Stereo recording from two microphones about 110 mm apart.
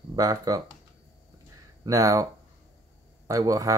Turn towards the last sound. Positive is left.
turn(degrees=-30)  # may be behind; listen again after turning